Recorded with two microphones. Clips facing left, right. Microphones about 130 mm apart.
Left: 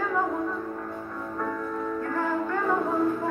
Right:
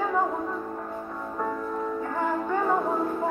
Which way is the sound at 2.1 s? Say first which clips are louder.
Right 2 dB; 15° right (ahead or behind).